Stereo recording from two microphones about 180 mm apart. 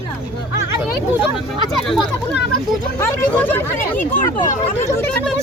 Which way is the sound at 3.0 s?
10° left (ahead or behind).